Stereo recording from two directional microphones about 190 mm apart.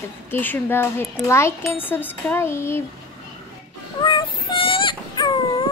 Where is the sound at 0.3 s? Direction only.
10° left (ahead or behind).